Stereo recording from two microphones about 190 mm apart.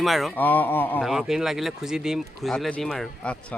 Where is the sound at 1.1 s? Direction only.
Centre (ahead or behind).